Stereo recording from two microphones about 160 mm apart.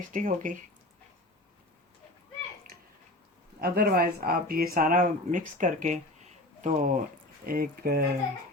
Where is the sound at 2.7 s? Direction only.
70° right (ahead or behind).